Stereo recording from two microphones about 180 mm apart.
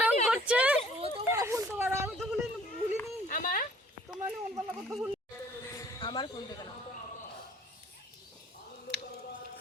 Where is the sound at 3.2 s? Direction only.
50° left (ahead or behind).